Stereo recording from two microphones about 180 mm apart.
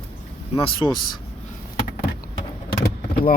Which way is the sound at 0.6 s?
30° left (ahead or behind).